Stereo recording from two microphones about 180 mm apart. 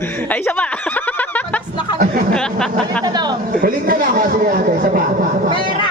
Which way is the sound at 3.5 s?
55° right (ahead or behind).